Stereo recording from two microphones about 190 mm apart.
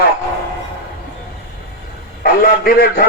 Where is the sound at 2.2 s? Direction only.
50° left (ahead or behind).